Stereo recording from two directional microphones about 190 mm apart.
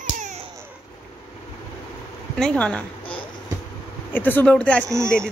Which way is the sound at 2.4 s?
5° left (ahead or behind).